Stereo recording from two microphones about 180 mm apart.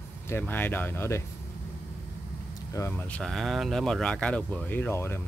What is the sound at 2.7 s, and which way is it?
Speech, 15° left (ahead or behind).